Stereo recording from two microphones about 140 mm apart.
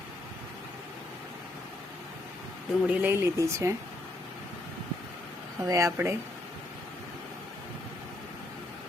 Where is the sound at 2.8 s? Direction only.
10° right (ahead or behind).